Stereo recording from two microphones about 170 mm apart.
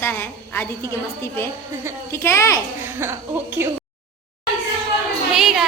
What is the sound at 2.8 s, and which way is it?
Speech, 15° right (ahead or behind).